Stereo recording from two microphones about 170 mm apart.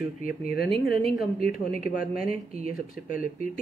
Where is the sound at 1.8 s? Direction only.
55° left (ahead or behind).